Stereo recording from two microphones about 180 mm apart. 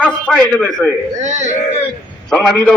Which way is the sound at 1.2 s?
40° right (ahead or behind).